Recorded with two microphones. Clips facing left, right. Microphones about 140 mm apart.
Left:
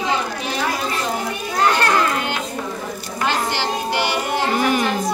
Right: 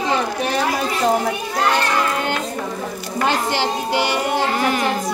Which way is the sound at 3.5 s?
20° right (ahead or behind).